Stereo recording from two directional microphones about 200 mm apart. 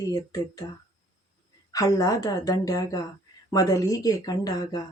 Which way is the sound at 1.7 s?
15° left (ahead or behind).